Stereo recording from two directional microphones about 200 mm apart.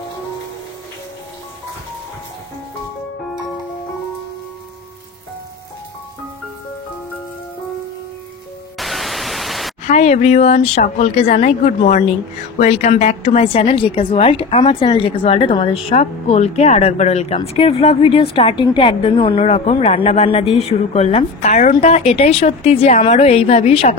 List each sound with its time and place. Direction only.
8.7 s pink noise: centre (ahead or behind)
9.8 s a woman's voice: 35° left (ahead or behind)